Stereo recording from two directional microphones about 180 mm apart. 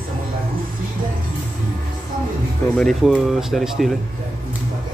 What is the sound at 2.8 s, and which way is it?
Speech, centre (ahead or behind).